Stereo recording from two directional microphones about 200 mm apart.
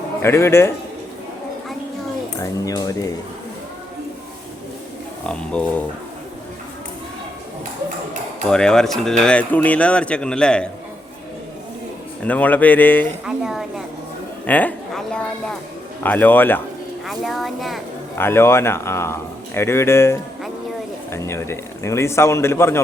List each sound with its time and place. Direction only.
0.2 s a man's voice: 10° left (ahead or behind)
2.4 s a man's voice: 15° left (ahead or behind)
5.3 s speech: 5° left (ahead or behind)
8.4 s speech: 5° left (ahead or behind)
12.2 s a man's voice: 5° left (ahead or behind)
13.2 s a woman's voice: centre (ahead or behind)
18.2 s a man's voice: 10° left (ahead or behind)